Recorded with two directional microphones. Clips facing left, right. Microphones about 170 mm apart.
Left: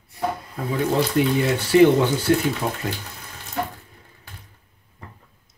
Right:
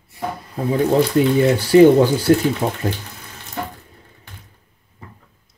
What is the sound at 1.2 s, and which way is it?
Speech, 35° right (ahead or behind).